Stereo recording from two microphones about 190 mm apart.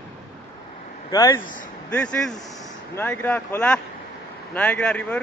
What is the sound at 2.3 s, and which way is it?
Speech, 20° left (ahead or behind).